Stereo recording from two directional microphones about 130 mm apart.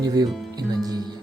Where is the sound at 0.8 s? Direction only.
30° right (ahead or behind).